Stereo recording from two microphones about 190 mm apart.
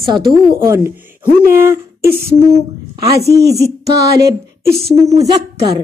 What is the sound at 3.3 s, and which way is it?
Speech, 60° right (ahead or behind).